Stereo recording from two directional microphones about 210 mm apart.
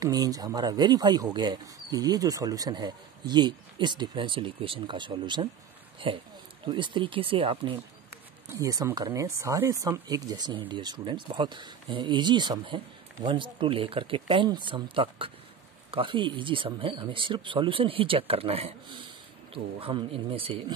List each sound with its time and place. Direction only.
0.0 s speech: 15° right (ahead or behind)